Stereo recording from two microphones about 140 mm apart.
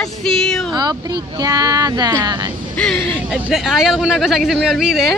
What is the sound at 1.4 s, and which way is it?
Speech, 25° right (ahead or behind).